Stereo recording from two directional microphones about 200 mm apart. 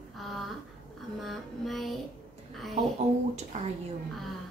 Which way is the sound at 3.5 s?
35° right (ahead or behind).